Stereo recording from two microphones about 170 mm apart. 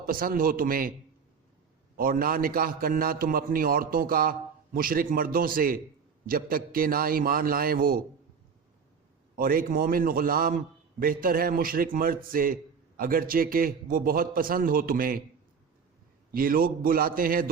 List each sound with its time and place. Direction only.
0.0 s a man's voice: 55° right (ahead or behind)
2.0 s a man's voice: 55° right (ahead or behind)
9.3 s a man's voice: 60° right (ahead or behind)
16.3 s a man's voice: 60° right (ahead or behind)